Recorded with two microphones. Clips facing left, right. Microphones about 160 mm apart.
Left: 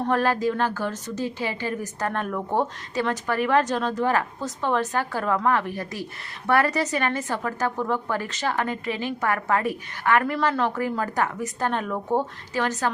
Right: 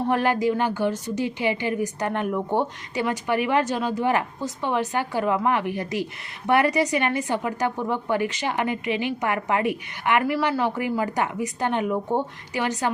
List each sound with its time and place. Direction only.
0.0 s a woman's voice: 15° right (ahead or behind)